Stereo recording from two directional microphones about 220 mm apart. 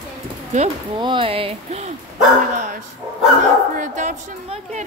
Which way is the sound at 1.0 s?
20° right (ahead or behind).